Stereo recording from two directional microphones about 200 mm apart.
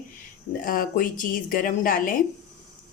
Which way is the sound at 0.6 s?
45° left (ahead or behind).